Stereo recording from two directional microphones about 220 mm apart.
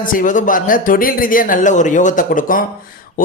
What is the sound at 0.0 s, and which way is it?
A man's voice, 35° left (ahead or behind).